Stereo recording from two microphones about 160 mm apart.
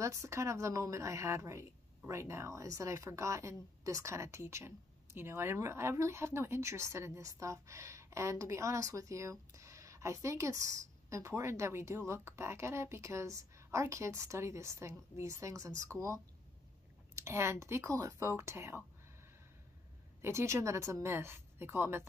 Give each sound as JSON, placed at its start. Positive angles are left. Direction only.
{"t": 0.0, "sound": "a woman's voice", "side_deg": -20}
{"t": 20.2, "sound": "speech", "side_deg": -15}